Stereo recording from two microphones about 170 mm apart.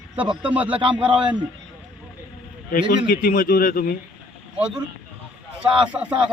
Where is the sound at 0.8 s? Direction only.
30° right (ahead or behind).